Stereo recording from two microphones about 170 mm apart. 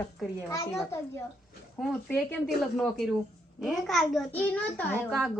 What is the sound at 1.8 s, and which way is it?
A woman's voice, 5° left (ahead or behind).